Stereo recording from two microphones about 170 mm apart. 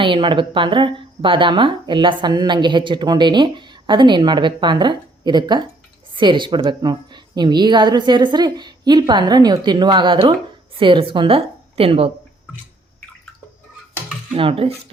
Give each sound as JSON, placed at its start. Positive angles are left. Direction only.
{"t": 0.0, "sound": "a woman's voice", "side_deg": -30}
{"t": 14.3, "sound": "a woman's voice", "side_deg": -35}